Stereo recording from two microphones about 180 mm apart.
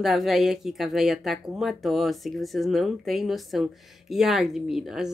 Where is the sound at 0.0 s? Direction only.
Centre (ahead or behind).